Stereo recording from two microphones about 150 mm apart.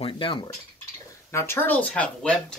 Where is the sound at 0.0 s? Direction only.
35° left (ahead or behind).